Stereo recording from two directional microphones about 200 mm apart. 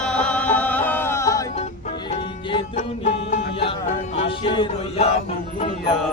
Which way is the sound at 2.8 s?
35° left (ahead or behind).